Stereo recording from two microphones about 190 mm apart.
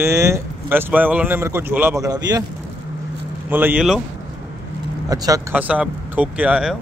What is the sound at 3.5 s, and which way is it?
Speech, 10° right (ahead or behind).